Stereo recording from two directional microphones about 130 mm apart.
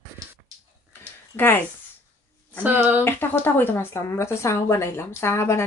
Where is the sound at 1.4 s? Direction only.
15° left (ahead or behind).